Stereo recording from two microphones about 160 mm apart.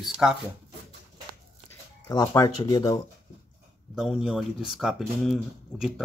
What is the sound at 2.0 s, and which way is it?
Speech, 20° left (ahead or behind).